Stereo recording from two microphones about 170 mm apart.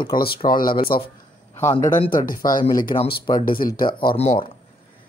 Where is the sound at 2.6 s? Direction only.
25° left (ahead or behind).